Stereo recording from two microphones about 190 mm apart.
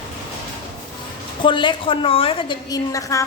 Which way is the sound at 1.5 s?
25° left (ahead or behind).